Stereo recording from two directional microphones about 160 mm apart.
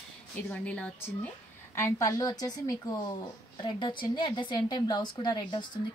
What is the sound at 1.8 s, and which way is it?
A woman's voice, 20° left (ahead or behind).